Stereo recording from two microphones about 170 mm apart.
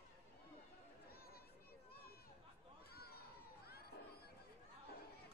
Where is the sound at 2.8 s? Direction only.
65° left (ahead or behind).